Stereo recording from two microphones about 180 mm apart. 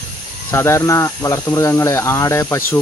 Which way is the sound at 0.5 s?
15° left (ahead or behind).